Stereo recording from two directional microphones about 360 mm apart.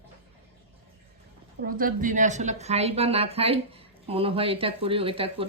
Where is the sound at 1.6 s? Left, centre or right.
Right.